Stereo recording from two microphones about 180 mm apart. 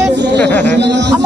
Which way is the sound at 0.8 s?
75° right (ahead or behind).